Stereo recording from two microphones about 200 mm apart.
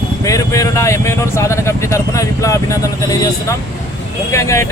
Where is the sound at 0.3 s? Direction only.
15° left (ahead or behind).